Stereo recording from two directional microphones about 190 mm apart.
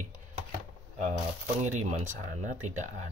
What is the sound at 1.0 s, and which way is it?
Speech, 40° right (ahead or behind).